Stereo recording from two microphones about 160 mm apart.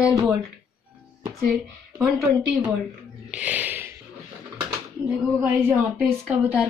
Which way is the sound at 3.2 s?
10° right (ahead or behind).